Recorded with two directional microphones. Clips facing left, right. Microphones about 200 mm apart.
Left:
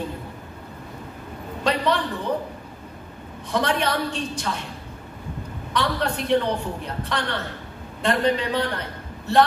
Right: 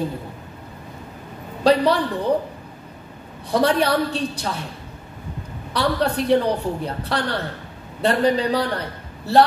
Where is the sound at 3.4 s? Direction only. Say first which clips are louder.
Right 5 dB; 35° right (ahead or behind).